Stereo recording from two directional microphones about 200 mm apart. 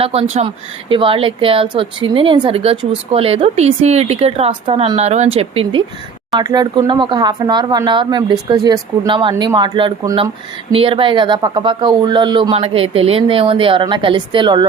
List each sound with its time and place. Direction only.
0.0 s speech: 30° right (ahead or behind)